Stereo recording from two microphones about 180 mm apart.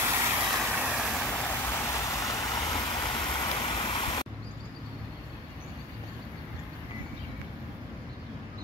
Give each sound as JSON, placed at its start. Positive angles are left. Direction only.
{"t": 0.0, "sound": "vehicle", "side_deg": -15}
{"t": 1.2, "sound": "vehicle", "side_deg": 15}